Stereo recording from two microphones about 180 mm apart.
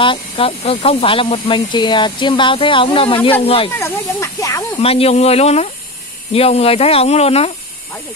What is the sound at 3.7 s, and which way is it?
Speech, 15° left (ahead or behind).